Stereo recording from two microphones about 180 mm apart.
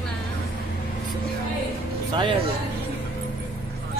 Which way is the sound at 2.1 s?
30° right (ahead or behind).